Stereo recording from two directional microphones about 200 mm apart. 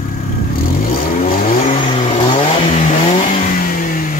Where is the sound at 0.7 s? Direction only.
45° left (ahead or behind).